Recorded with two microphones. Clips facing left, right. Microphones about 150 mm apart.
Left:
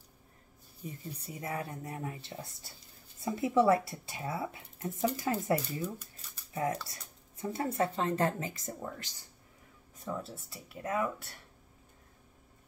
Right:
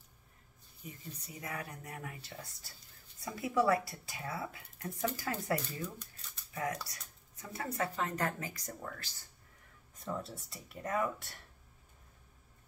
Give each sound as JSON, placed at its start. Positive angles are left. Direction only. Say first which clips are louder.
{"t": 0.8, "sound": "speech", "louder": "left 6 dB", "side_deg": 30}
{"t": 5.8, "sound": "a sound", "louder": "left 5 dB", "side_deg": 10}
{"t": 6.5, "sound": "speech", "louder": "left 4 dB", "side_deg": 25}
{"t": 9.9, "sound": "speech", "louder": "left 1 dB", "side_deg": 0}